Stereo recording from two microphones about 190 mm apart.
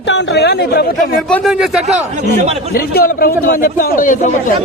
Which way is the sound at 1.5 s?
5° right (ahead or behind).